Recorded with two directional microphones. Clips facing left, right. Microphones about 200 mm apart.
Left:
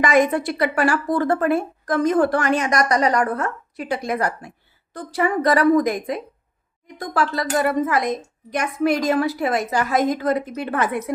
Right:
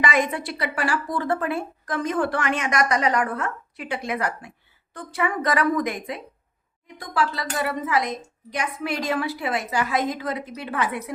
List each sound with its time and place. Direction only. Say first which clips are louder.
0.0 s a woman's voice: left 6 dB; 45° left (ahead or behind)